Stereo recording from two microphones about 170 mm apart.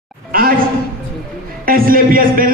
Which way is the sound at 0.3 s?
60° right (ahead or behind).